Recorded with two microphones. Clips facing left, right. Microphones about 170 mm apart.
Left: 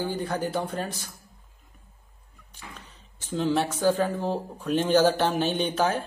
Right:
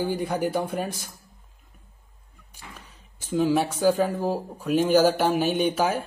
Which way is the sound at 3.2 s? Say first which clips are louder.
Right 3 dB; 10° right (ahead or behind).